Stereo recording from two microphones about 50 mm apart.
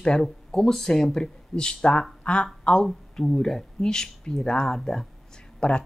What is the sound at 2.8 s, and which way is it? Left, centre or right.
Speech, centre.